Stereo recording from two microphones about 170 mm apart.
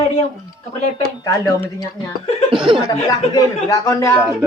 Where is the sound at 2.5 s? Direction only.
30° right (ahead or behind).